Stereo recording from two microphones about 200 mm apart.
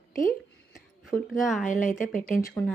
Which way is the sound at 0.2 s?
40° left (ahead or behind).